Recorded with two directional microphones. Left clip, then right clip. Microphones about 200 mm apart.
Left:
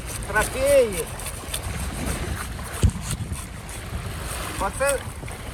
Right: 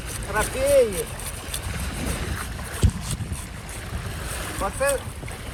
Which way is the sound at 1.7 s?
50° left (ahead or behind).